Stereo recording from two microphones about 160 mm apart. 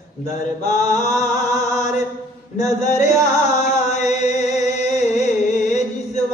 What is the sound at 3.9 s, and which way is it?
Music, 45° left (ahead or behind).